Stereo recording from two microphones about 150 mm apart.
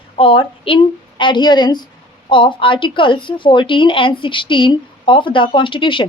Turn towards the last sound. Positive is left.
turn(degrees=30)  # may be behind; listen again after turning